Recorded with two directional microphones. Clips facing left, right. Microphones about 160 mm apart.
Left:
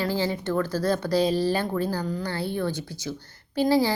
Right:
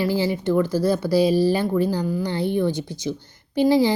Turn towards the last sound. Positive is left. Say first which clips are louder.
# right 4 dB
turn(degrees=-15)  # may be behind; listen again after turning